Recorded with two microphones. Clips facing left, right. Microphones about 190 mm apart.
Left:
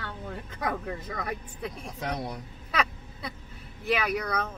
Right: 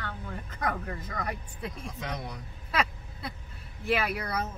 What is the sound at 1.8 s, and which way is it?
Speech, 35° left (ahead or behind).